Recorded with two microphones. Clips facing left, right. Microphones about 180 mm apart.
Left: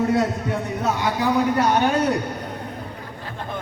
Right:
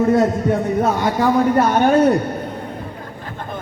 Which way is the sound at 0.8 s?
50° right (ahead or behind).